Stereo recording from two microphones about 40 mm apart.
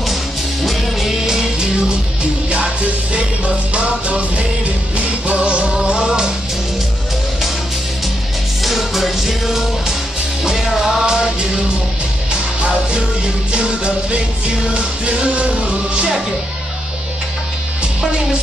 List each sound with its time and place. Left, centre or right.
0.7 s music: centre
2.5 s music: right
8.6 s music: centre
13.5 s music: right